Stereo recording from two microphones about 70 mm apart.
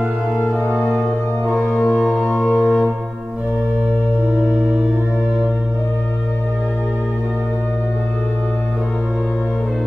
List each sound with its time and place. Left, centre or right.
1.9 s organ: centre
2.4 s music: left